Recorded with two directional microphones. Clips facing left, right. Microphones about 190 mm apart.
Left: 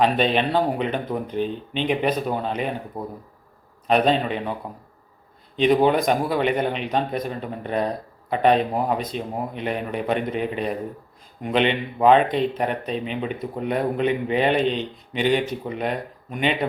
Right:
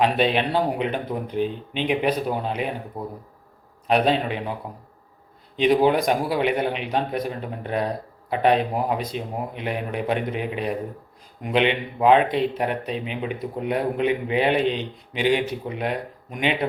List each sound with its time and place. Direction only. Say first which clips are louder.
0.0 s speech: left 1 dB; 10° right (ahead or behind)
3.8 s speech: left 1 dB; 10° right (ahead or behind)
5.5 s speech: even; 10° right (ahead or behind)